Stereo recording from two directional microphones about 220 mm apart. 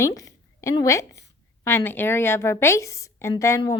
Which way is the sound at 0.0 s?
15° left (ahead or behind).